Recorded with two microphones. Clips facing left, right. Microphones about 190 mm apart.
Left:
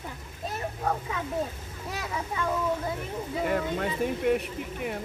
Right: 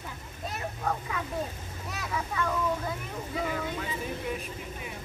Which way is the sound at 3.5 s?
65° left (ahead or behind).